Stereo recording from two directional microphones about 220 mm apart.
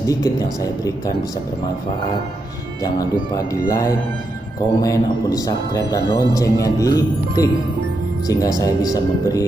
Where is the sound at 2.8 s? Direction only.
15° left (ahead or behind).